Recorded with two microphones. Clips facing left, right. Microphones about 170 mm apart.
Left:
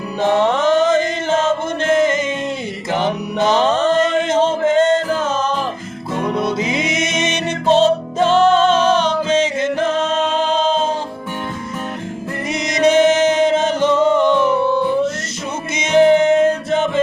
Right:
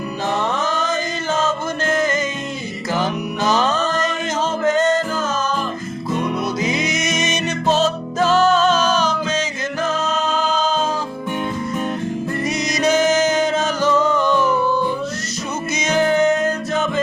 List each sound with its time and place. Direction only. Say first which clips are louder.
0.3 s chant: left 9 dB; 25° left (ahead or behind)
2.9 s music: left 2 dB; 25° left (ahead or behind)
6.3 s music: left 2 dB; 30° left (ahead or behind)
12.7 s music: left 5 dB; 25° left (ahead or behind)
15.8 s music: left 5 dB; 25° left (ahead or behind)